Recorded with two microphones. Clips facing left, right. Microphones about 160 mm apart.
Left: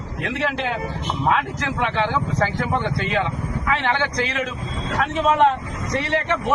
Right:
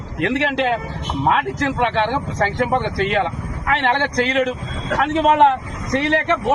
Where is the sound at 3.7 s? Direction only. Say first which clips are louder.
Right 4 dB; 65° right (ahead or behind).